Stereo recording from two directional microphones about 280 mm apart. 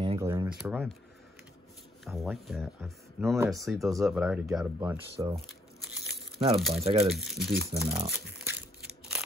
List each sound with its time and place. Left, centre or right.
0.0 s a sound: centre
2.0 s speech: centre
6.0 s crumpling: centre
6.7 s speech: right
7.2 s speech: centre
8.5 s a sound: centre